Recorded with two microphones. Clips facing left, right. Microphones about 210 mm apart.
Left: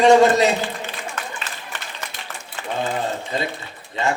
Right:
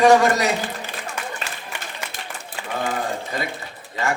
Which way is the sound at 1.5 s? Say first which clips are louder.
Right 1 dB; 10° right (ahead or behind).